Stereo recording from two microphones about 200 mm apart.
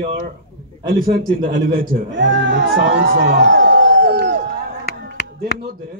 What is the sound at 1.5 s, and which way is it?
Speech, 45° right (ahead or behind).